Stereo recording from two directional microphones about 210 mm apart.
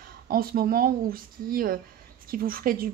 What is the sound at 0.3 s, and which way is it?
A woman's voice, 45° right (ahead or behind).